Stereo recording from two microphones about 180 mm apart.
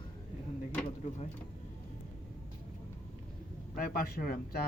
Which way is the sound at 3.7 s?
55° left (ahead or behind).